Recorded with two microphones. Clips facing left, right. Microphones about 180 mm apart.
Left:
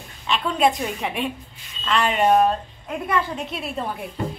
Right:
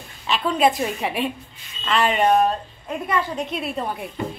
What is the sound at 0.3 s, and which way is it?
A woman's voice, centre (ahead or behind).